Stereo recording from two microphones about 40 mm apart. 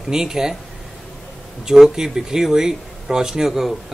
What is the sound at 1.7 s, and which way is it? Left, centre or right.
Speech, centre.